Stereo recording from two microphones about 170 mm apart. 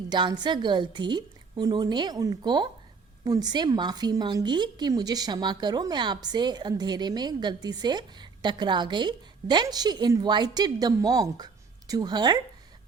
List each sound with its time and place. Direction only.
0.1 s a woman's voice: 25° right (ahead or behind)